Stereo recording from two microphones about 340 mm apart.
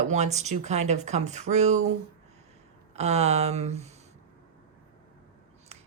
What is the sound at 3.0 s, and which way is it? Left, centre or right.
Speech, centre.